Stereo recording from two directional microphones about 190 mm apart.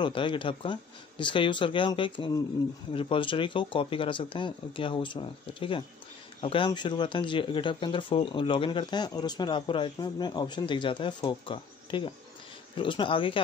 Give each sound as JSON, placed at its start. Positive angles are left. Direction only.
{"t": 0.0, "sound": "speech", "side_deg": 25}